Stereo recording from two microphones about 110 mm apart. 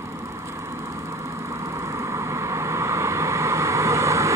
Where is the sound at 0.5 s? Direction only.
25° right (ahead or behind).